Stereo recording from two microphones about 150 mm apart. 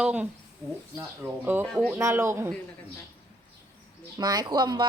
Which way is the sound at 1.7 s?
Centre (ahead or behind).